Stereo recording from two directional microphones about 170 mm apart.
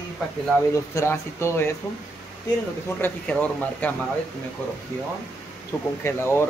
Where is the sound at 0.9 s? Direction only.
15° left (ahead or behind).